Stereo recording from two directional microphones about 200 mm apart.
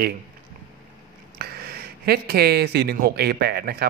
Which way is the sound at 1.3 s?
50° right (ahead or behind).